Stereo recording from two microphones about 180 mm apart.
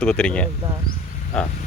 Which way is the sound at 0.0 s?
5° left (ahead or behind).